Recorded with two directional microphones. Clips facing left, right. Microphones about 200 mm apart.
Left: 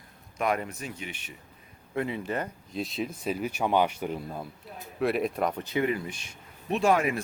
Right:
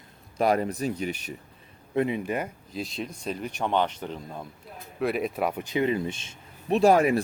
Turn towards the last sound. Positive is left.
turn(degrees=-35)  # may be behind; listen again after turning